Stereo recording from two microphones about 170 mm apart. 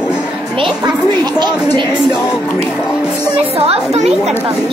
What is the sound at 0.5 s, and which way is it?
Music, 30° right (ahead or behind).